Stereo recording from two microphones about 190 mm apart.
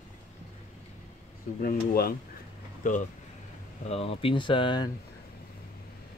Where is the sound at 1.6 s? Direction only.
50° left (ahead or behind).